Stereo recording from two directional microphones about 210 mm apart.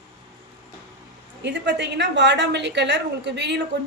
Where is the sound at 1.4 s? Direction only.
55° right (ahead or behind).